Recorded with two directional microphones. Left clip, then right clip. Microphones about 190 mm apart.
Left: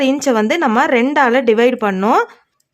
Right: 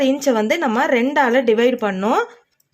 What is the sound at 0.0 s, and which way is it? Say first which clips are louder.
A woman's voice: left 2 dB; 25° left (ahead or behind).